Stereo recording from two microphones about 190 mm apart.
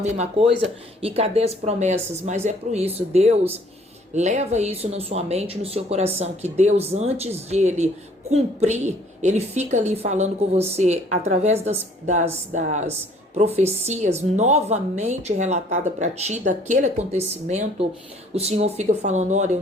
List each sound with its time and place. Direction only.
0.0 s speech: 35° right (ahead or behind)